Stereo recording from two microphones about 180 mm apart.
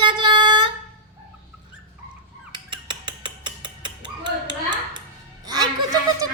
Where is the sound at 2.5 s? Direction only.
25° right (ahead or behind).